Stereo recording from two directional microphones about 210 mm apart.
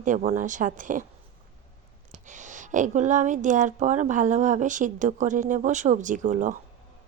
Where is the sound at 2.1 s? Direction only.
35° right (ahead or behind).